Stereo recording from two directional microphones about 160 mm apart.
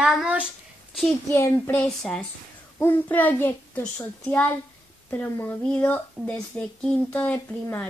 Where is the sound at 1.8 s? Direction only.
5° left (ahead or behind).